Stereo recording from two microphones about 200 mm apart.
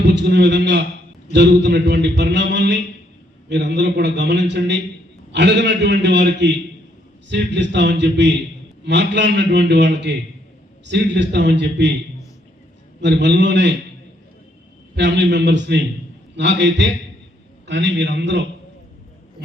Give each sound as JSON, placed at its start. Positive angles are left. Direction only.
{"t": 0.0, "sound": "a man's voice", "side_deg": -60}
{"t": 13.0, "sound": "a man's voice", "side_deg": -65}
{"t": 14.9, "sound": "a man's voice", "side_deg": -60}